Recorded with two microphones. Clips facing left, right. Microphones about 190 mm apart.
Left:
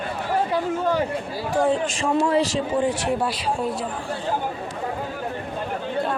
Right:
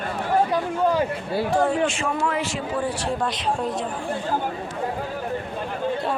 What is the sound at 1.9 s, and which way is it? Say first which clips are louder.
Speech: left 5 dB; 35° left (ahead or behind).